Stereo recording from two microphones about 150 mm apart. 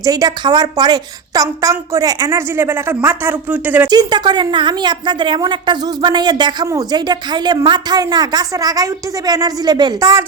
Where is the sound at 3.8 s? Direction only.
25° right (ahead or behind).